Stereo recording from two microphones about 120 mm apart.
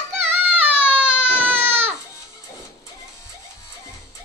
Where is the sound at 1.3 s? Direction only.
15° right (ahead or behind).